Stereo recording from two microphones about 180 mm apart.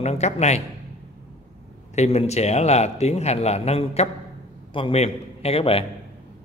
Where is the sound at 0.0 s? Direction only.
40° left (ahead or behind).